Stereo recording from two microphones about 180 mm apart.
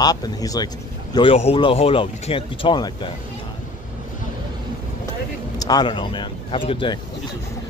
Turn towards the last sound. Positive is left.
turn(degrees=30)  # may be behind; listen again after turning